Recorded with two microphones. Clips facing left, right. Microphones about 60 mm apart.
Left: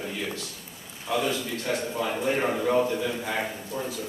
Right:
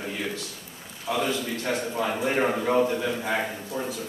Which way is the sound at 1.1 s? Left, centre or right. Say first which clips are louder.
Even; centre.